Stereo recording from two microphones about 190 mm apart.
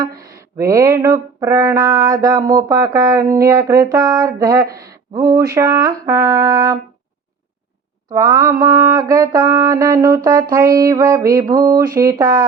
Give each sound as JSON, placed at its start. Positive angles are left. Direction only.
{"t": 0.0, "sound": "music", "side_deg": -20}
{"t": 8.1, "sound": "mantra", "side_deg": -20}
{"t": 10.5, "sound": "music", "side_deg": -20}